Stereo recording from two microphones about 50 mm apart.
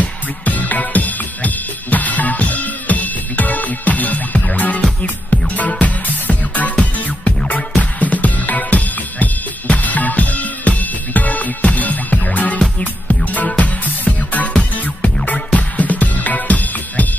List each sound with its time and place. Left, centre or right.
0.0 s music: left
14.5 s music: centre